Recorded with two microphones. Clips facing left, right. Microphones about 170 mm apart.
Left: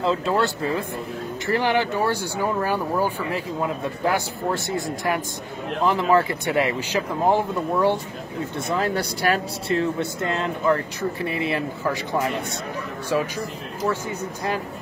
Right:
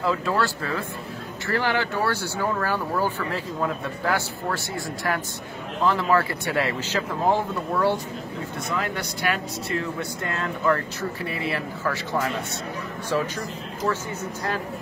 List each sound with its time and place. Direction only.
0.0 s speech: 25° left (ahead or behind)
8.6 s speech: 35° left (ahead or behind); by 12.3 s 15° left (ahead or behind)